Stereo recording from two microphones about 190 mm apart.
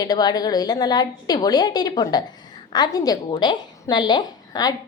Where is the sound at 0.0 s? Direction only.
20° left (ahead or behind).